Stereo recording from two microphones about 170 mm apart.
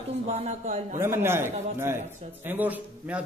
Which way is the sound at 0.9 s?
15° right (ahead or behind).